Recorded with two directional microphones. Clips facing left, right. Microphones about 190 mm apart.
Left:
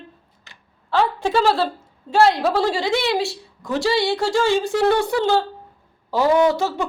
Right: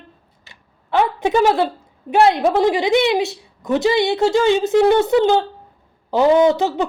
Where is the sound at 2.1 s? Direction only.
20° right (ahead or behind).